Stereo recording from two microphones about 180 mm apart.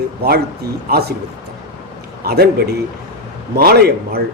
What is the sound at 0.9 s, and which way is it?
Speech, 65° right (ahead or behind).